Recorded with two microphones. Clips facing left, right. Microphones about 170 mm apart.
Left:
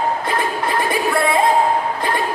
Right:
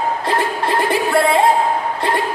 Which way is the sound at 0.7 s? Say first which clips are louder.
Right 3 dB; 30° right (ahead or behind).